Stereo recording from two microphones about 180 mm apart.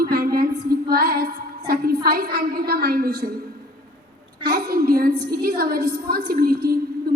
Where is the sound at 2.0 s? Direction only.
55° right (ahead or behind).